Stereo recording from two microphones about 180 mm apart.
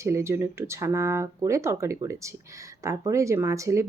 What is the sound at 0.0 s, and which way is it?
Speech, 15° right (ahead or behind).